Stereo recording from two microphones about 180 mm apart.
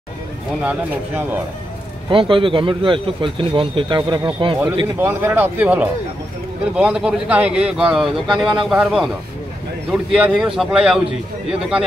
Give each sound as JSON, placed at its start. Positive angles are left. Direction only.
{"t": 0.6, "sound": "speech", "side_deg": -5}
{"t": 2.0, "sound": "speech", "side_deg": -30}
{"t": 4.9, "sound": "speech", "side_deg": -10}